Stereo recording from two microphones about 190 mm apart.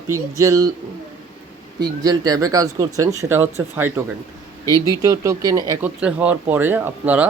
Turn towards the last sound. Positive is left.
turn(degrees=-10)  # may be behind; listen again after turning